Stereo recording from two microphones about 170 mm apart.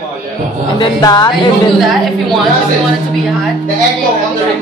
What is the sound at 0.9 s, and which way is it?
Speech, 25° left (ahead or behind).